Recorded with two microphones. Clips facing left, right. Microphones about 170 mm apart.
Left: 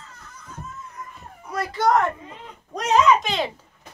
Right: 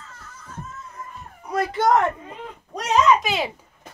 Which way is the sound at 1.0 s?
25° right (ahead or behind).